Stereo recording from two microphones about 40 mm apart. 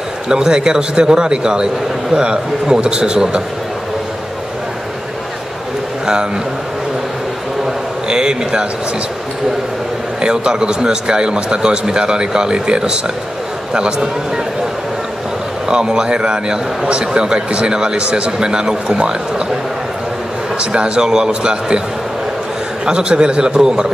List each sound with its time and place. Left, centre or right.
0.3 s a man's voice: centre
8.1 s a man's voice: right
10.2 s a man's voice: centre
15.7 s a man's voice: centre
20.5 s a man's voice: right
22.8 s a man's voice: right